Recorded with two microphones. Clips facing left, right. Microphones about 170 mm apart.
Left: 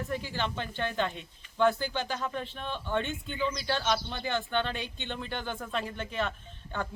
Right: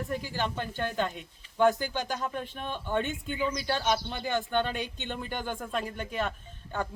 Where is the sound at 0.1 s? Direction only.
10° right (ahead or behind).